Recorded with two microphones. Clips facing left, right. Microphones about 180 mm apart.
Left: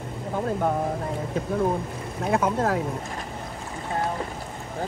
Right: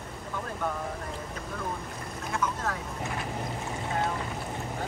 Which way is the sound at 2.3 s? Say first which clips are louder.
Left 9 dB; 55° left (ahead or behind).